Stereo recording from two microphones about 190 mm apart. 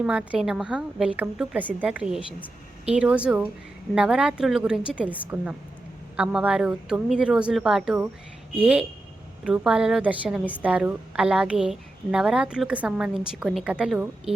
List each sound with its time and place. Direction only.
0.0 s a woman's voice: 5° right (ahead or behind)
9.4 s a woman's voice: 5° right (ahead or behind)